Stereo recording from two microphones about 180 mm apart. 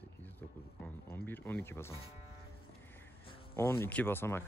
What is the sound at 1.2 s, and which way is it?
Speech, 10° left (ahead or behind).